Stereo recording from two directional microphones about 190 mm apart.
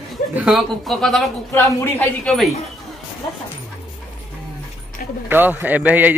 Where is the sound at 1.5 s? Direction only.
15° left (ahead or behind).